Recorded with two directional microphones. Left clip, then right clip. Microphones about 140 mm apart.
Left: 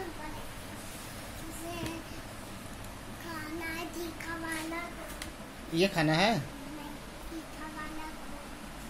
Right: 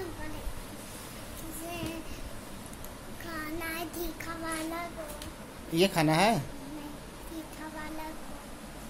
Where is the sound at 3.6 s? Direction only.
90° right.